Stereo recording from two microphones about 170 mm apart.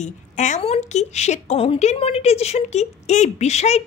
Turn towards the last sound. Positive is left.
turn(degrees=40)  # may be behind; listen again after turning